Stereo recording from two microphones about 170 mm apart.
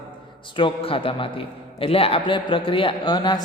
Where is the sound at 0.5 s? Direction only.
30° left (ahead or behind).